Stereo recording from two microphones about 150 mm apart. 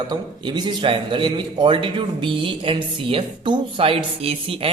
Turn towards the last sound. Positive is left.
turn(degrees=-40)  # may be behind; listen again after turning